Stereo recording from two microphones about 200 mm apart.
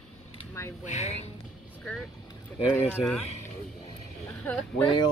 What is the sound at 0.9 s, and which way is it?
Speech, 35° left (ahead or behind).